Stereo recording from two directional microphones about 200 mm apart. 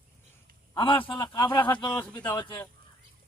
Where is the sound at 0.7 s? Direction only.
25° left (ahead or behind).